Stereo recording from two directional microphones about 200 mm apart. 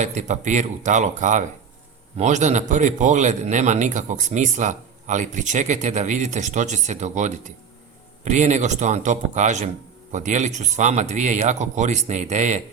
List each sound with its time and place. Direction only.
0.0 s a man's voice: 35° right (ahead or behind)